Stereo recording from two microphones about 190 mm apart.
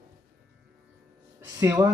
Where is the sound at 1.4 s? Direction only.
20° right (ahead or behind).